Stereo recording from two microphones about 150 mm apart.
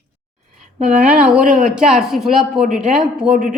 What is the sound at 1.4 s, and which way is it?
Speech, 60° right (ahead or behind).